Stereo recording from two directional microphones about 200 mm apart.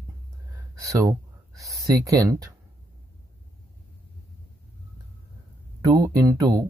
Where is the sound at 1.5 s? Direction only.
15° right (ahead or behind).